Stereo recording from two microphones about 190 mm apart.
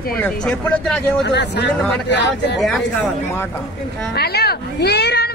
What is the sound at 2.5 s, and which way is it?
Speech, centre (ahead or behind).